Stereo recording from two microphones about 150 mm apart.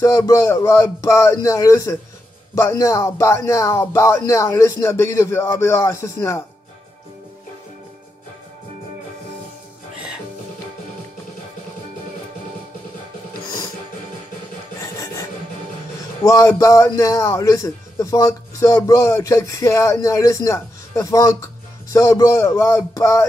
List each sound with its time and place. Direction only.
0.0 s a man's voice: 20° left (ahead or behind)
14.8 s filing: 20° left (ahead or behind)
16.3 s a man's voice: 20° left (ahead or behind)